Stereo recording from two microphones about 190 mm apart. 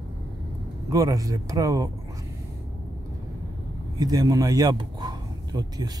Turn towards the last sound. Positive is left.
turn(degrees=-20)  # may be behind; listen again after turning